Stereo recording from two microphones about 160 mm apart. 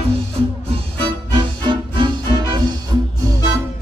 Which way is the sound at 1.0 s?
30° right (ahead or behind).